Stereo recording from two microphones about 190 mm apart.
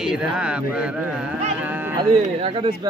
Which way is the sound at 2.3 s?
30° right (ahead or behind).